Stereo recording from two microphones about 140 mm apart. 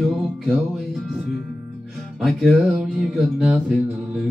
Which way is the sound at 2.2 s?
Centre (ahead or behind).